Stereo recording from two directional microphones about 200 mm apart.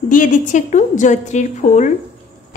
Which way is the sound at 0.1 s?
40° left (ahead or behind).